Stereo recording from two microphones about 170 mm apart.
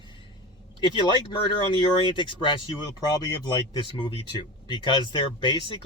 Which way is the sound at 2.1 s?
30° left (ahead or behind).